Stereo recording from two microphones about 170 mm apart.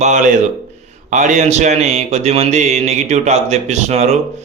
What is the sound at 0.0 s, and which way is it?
Speech, 45° right (ahead or behind).